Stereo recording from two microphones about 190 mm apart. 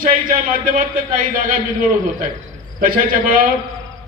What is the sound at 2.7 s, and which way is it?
Speech, 50° right (ahead or behind).